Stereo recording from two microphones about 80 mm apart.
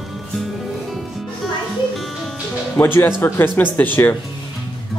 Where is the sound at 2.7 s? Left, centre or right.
Left.